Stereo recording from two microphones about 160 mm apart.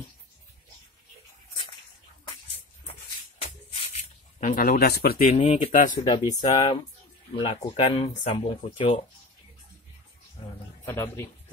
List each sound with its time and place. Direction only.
3.4 s shuffle: 40° left (ahead or behind)
4.4 s speech: 60° left (ahead or behind)
5.4 s speech: 40° left (ahead or behind)
10.9 s speech: 15° left (ahead or behind)